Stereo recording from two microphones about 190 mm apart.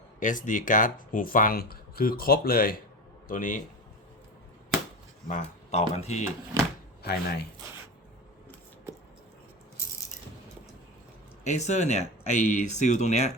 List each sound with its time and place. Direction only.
0.2 s speech: 40° left (ahead or behind)
5.3 s speech: 35° left (ahead or behind)
7.0 s speech: 55° left (ahead or behind)
11.4 s speech: 35° left (ahead or behind)